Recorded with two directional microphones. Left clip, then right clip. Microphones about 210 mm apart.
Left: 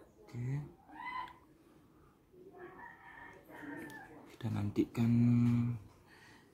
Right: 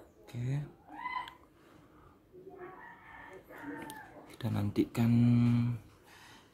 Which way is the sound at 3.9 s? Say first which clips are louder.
Right 3 dB; 20° right (ahead or behind).